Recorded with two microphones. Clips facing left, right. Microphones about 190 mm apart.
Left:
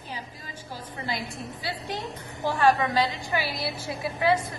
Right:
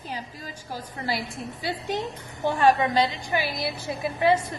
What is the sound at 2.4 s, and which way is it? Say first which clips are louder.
A woman's voice: right 2 dB; 20° right (ahead or behind).